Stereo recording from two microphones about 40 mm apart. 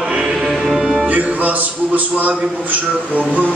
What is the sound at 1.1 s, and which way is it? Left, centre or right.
Speech, right.